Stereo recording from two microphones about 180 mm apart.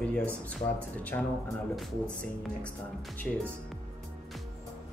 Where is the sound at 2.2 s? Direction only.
5° left (ahead or behind).